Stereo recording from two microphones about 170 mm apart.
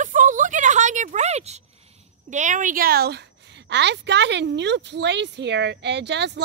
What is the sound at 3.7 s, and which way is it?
A child's voice, 90° right.